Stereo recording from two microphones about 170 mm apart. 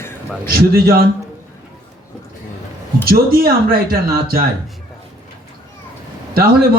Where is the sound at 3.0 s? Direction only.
60° right (ahead or behind).